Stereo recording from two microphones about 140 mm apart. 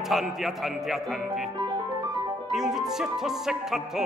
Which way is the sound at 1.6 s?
30° right (ahead or behind).